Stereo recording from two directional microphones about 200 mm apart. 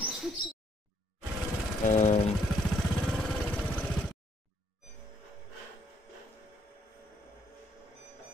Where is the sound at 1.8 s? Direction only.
35° left (ahead or behind).